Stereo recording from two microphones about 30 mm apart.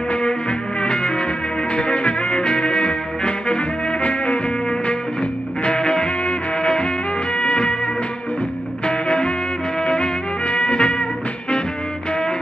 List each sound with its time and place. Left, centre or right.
0.5 s music: left
4.0 s music: left
5.6 s music: left